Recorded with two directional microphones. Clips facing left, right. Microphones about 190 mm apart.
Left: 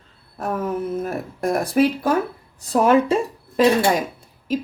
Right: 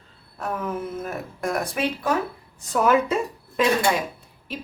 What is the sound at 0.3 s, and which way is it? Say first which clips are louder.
Speech: left 4 dB; 45° left (ahead or behind).